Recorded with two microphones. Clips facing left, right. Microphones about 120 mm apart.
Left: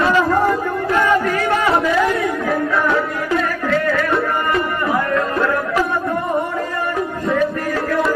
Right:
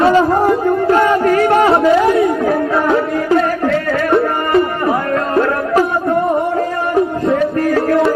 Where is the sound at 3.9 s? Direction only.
30° right (ahead or behind).